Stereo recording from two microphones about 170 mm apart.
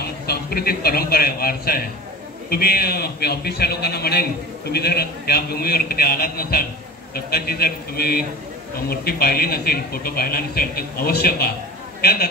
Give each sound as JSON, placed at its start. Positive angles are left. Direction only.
{"t": 0.0, "sound": "a man's voice", "side_deg": 65}